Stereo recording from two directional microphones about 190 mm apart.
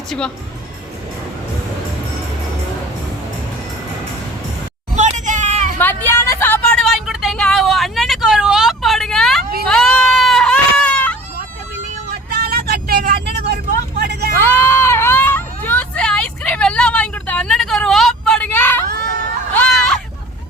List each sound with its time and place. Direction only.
0.1 s speech: 5° left (ahead or behind)
4.9 s hubbub: 40° right (ahead or behind)
5.8 s vehicle: 10° left (ahead or behind)
9.6 s baby cry: 5° left (ahead or behind)
12.3 s vehicle: 55° right (ahead or behind)
14.4 s baby cry: 10° left (ahead or behind)
19.5 s a sound: 5° left (ahead or behind)